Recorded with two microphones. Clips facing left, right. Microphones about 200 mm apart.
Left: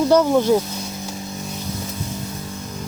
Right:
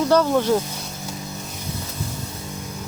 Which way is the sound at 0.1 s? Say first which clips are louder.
Left 2 dB; 15° left (ahead or behind).